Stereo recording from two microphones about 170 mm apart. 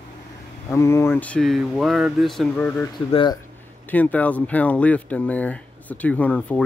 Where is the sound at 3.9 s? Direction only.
10° left (ahead or behind).